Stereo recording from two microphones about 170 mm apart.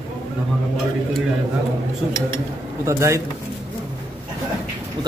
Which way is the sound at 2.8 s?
15° right (ahead or behind).